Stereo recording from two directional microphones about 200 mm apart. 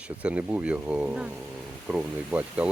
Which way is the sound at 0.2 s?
5° right (ahead or behind).